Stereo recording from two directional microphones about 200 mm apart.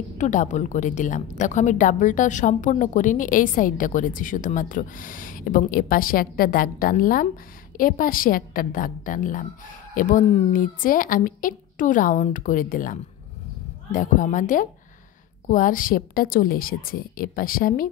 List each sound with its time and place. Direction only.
0.2 s a woman's voice: 40° left (ahead or behind)